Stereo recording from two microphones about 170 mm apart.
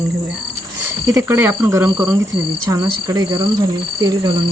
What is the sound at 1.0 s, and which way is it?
Speech, 15° right (ahead or behind).